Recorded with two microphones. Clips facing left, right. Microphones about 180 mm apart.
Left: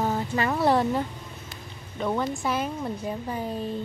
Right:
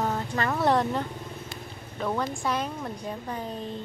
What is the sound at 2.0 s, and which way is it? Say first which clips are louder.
Speech: left 2 dB; 5° left (ahead or behind).